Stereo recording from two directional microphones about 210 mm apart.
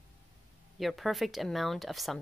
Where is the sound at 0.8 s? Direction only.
Centre (ahead or behind).